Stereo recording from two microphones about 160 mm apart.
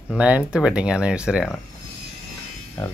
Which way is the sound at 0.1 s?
10° right (ahead or behind).